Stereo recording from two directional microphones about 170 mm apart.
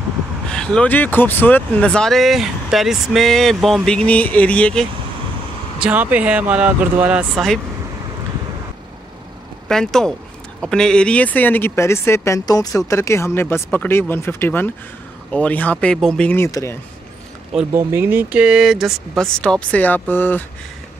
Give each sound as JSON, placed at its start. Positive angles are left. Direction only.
{"t": 0.5, "sound": "speech", "side_deg": 5}
{"t": 5.8, "sound": "speech", "side_deg": -10}
{"t": 9.7, "sound": "speech", "side_deg": 5}
{"t": 16.4, "sound": "speech", "side_deg": 20}
{"t": 17.7, "sound": "speech", "side_deg": -15}